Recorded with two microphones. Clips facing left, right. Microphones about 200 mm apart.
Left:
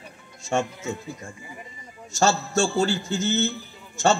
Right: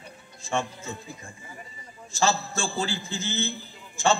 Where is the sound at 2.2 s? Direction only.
45° left (ahead or behind).